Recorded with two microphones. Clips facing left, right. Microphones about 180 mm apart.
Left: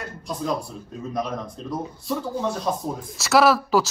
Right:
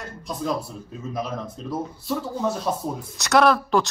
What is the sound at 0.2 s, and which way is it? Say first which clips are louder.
Speech: even; centre (ahead or behind).